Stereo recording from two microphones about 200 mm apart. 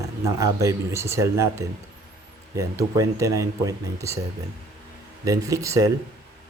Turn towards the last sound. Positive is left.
turn(degrees=-15)  # may be behind; listen again after turning